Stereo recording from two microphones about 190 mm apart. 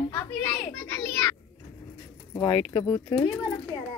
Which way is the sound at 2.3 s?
20° left (ahead or behind).